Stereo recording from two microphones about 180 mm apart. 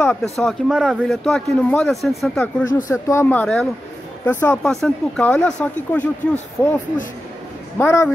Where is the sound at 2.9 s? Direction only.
15° left (ahead or behind).